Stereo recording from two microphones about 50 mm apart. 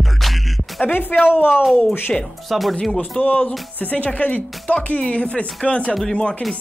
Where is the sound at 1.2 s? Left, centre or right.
Left.